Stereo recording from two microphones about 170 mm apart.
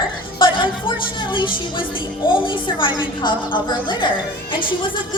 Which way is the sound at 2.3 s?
30° left (ahead or behind).